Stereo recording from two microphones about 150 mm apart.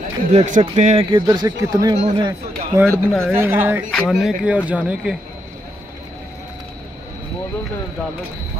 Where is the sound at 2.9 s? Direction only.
Centre (ahead or behind).